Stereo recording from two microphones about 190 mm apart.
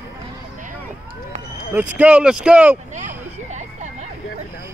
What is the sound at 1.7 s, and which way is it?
Speech, 10° right (ahead or behind).